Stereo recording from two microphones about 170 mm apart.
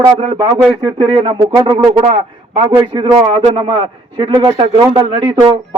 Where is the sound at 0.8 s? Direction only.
30° right (ahead or behind).